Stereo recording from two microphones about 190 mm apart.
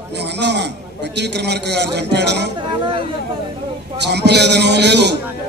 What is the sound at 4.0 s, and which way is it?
A man's voice, 65° right (ahead or behind).